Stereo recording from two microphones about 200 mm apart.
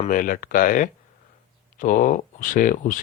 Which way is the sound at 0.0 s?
40° left (ahead or behind).